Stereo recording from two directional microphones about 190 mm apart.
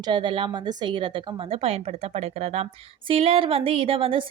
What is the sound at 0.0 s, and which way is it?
A woman's voice, 25° right (ahead or behind).